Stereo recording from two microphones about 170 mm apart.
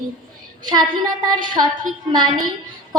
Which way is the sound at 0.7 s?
25° right (ahead or behind).